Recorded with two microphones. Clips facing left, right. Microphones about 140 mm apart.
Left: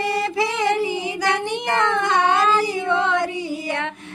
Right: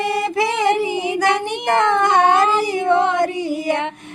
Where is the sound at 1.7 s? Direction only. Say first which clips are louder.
Right 5 dB; 55° right (ahead or behind).